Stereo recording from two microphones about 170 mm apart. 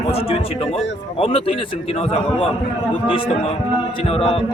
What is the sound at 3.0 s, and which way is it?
A man's voice, 30° left (ahead or behind).